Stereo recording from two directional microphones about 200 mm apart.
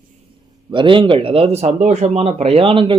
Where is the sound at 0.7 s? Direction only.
25° right (ahead or behind).